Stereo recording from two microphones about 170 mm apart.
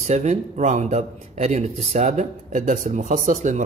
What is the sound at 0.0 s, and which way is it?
A man's voice, 40° right (ahead or behind).